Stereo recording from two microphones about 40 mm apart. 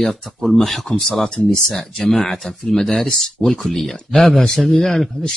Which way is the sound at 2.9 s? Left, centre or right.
Centre.